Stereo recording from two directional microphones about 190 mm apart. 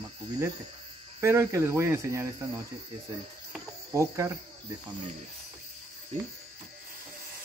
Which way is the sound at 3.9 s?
15° right (ahead or behind).